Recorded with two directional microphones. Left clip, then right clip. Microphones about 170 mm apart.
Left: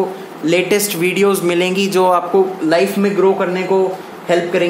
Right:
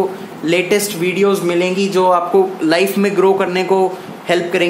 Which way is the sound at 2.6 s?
10° right (ahead or behind).